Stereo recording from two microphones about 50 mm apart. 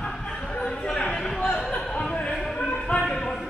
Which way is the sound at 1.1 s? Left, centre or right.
Centre.